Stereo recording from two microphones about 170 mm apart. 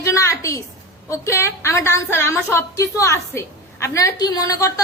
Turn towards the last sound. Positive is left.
turn(degrees=20)  # may be behind; listen again after turning